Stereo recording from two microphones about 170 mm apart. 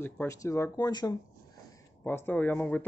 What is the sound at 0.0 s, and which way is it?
Speech, 15° left (ahead or behind).